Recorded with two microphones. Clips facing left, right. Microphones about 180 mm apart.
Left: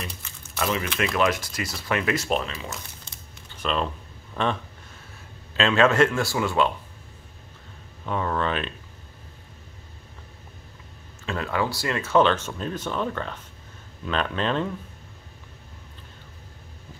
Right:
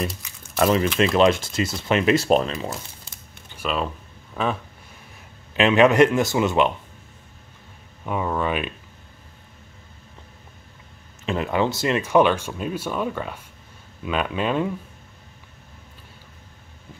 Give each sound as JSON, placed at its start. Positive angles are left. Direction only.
{"t": 0.6, "sound": "speech", "side_deg": -35}
{"t": 2.2, "sound": "speech", "side_deg": -40}
{"t": 3.5, "sound": "a sound", "side_deg": -5}
{"t": 5.5, "sound": "speech", "side_deg": -15}
{"t": 8.0, "sound": "speech", "side_deg": -10}
{"t": 11.2, "sound": "speech", "side_deg": -20}